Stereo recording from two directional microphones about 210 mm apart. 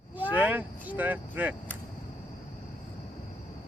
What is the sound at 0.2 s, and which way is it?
Speech, 10° right (ahead or behind).